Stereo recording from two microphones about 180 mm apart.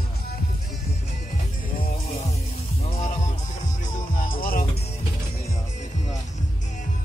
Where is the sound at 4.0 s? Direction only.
50° left (ahead or behind).